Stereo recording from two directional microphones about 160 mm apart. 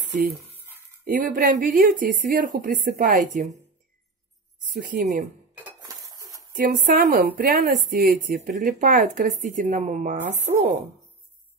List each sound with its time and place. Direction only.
1.0 s a woman's voice: 60° right (ahead or behind)
4.8 s a woman's voice: 55° right (ahead or behind)
5.8 s dishes: 20° right (ahead or behind)
6.5 s a woman's voice: 60° right (ahead or behind)